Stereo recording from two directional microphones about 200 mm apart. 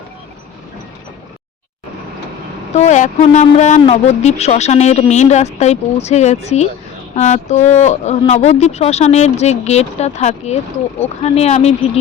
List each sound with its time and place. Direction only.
2.7 s speech: 35° left (ahead or behind)